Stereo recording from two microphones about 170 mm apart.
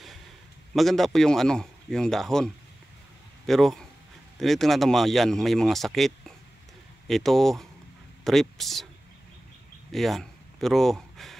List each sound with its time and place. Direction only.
0.7 s a man's voice: centre (ahead or behind)
9.8 s speech: centre (ahead or behind)